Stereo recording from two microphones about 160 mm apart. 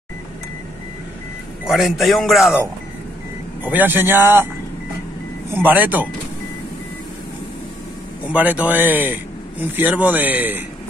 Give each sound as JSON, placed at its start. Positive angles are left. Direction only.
{"t": 1.6, "sound": "a man's voice", "side_deg": 0}
{"t": 3.6, "sound": "speech", "side_deg": -10}
{"t": 5.5, "sound": "speech", "side_deg": -10}
{"t": 8.3, "sound": "speech", "side_deg": -10}